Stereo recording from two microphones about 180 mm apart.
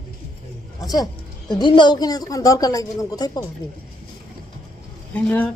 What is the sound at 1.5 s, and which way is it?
Speech, 25° left (ahead or behind).